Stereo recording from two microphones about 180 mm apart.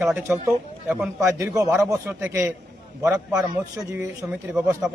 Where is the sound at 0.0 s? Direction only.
5° right (ahead or behind).